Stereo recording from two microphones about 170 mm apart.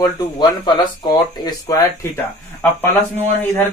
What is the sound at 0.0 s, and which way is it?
Speech, 25° left (ahead or behind).